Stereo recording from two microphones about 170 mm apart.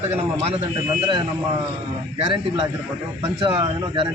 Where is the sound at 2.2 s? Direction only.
30° right (ahead or behind).